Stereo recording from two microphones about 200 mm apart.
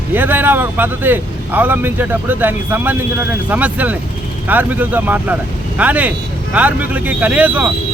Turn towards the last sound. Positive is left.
turn(degrees=-10)  # may be behind; listen again after turning